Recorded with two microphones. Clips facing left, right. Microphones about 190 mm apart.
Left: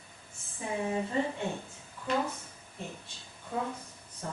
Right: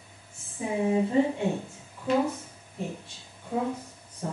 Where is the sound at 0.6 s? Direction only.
10° right (ahead or behind).